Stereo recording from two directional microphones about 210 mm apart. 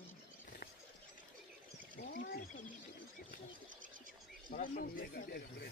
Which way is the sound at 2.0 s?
55° left (ahead or behind).